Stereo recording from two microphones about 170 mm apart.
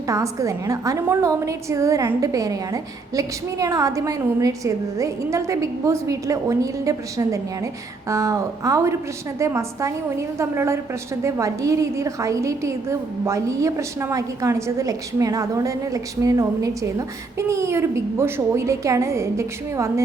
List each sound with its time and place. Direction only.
0.1 s a woman's voice: 20° right (ahead or behind)